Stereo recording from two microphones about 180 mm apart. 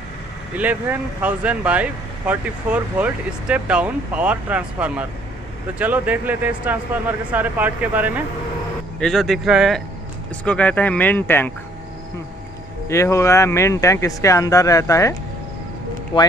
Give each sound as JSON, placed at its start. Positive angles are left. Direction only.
{"t": 0.6, "sound": "speech", "side_deg": -10}
{"t": 9.0, "sound": "speech", "side_deg": 0}
{"t": 12.8, "sound": "speech", "side_deg": 15}
{"t": 16.1, "sound": "speech", "side_deg": 25}